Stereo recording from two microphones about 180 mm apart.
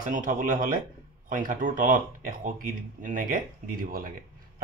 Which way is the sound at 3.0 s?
50° right (ahead or behind).